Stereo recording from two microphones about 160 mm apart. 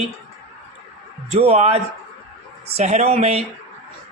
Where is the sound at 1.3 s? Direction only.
40° right (ahead or behind).